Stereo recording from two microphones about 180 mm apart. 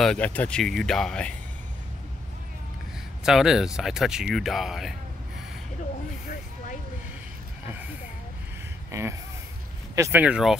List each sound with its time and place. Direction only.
0.0 s speech: 5° left (ahead or behind)
3.3 s speech: centre (ahead or behind)
8.9 s speech: 15° right (ahead or behind)